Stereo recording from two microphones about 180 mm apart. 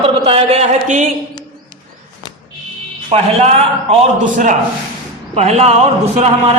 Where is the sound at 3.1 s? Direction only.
35° right (ahead or behind).